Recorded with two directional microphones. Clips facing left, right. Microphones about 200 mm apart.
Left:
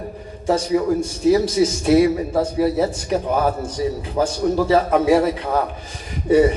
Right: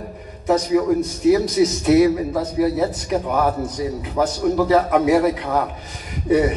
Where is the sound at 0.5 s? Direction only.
30° left (ahead or behind).